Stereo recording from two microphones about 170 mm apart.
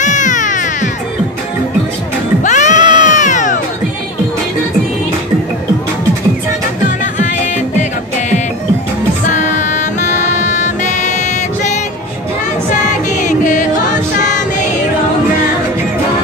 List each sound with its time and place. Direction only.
0.0 s music: 45° left (ahead or behind)
2.4 s cat: 45° left (ahead or behind)
9.2 s music: 45° left (ahead or behind)
12.8 s music: 45° left (ahead or behind)